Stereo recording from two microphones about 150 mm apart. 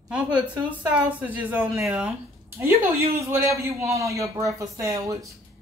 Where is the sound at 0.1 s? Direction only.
10° right (ahead or behind).